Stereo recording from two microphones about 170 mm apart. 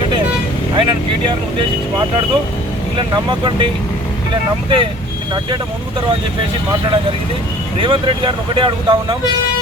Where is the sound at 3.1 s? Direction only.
25° right (ahead or behind).